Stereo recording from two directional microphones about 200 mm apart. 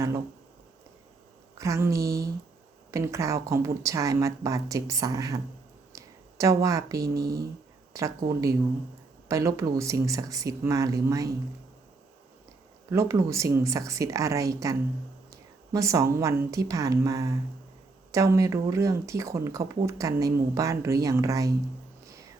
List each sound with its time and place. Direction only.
1.5 s speech: 15° right (ahead or behind)
5.9 s a sound: 15° right (ahead or behind)
7.1 s speech: 50° right (ahead or behind)
7.9 s speech: 15° right (ahead or behind)
12.9 s speech: 15° right (ahead or behind)